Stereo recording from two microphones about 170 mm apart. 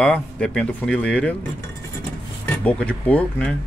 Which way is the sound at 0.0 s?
5° left (ahead or behind).